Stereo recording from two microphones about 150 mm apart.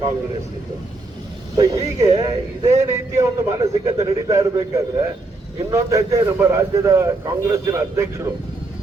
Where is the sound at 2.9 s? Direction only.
20° right (ahead or behind).